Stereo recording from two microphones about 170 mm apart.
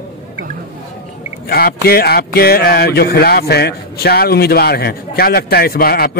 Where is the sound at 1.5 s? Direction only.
65° left (ahead or behind).